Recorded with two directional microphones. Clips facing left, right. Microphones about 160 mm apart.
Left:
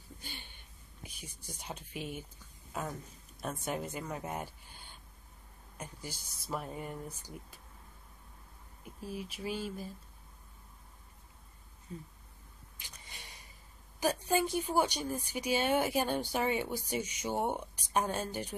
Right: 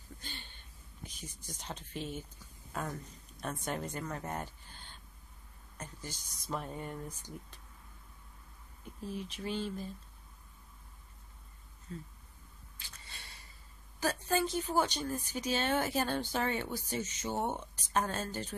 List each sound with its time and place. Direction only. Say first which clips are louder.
0.2 s a sound: even; 10° left (ahead or behind)
2.7 s a woman's voice: even; 5° left (ahead or behind)
9.0 s a woman's voice: even; 10° left (ahead or behind)
11.9 s a woman's voice: right 1 dB; 15° left (ahead or behind)
12.7 s a sound: left 1 dB; 15° left (ahead or behind)
13.9 s a woman's voice: left 2 dB; 15° left (ahead or behind)